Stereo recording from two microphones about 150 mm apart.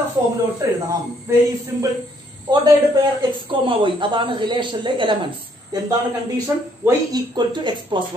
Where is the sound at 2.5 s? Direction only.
30° right (ahead or behind).